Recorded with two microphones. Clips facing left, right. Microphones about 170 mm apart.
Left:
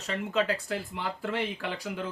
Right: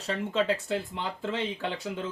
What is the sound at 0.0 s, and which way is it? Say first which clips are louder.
Speech: right 1 dB; 30° right (ahead or behind).